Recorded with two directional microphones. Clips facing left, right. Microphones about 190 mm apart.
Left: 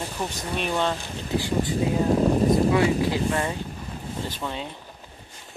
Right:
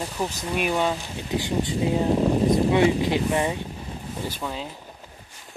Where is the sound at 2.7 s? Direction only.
20° right (ahead or behind).